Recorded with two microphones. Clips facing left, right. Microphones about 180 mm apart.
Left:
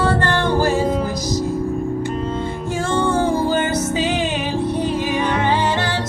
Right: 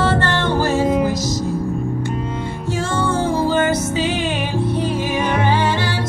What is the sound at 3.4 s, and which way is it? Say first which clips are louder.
Music: right 1 dB; 15° left (ahead or behind).